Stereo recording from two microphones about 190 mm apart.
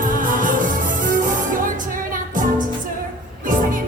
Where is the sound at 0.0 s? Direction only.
45° right (ahead or behind).